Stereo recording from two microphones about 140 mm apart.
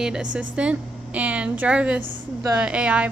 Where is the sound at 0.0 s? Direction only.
5° right (ahead or behind).